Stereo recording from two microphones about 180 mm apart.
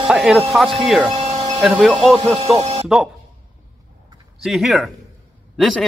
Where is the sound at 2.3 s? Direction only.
35° right (ahead or behind).